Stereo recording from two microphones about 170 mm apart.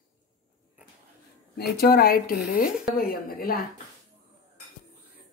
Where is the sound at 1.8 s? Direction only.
65° left (ahead or behind).